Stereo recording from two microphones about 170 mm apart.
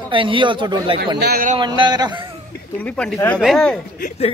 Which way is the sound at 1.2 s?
60° right (ahead or behind).